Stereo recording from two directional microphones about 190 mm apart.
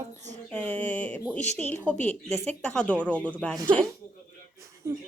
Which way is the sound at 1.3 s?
5° left (ahead or behind).